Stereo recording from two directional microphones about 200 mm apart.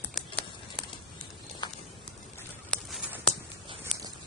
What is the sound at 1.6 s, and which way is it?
Clip-clop, 20° left (ahead or behind).